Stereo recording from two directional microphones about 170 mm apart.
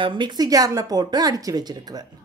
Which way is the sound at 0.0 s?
30° right (ahead or behind).